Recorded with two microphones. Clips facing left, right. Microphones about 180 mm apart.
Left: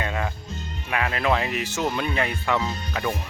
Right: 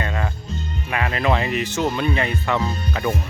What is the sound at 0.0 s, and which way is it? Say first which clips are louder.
Music: right 2 dB; 5° left (ahead or behind).